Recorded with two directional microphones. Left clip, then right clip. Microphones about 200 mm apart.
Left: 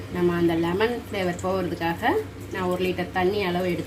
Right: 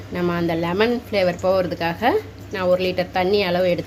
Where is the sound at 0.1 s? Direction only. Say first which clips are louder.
Right 1 dB; 55° right (ahead or behind).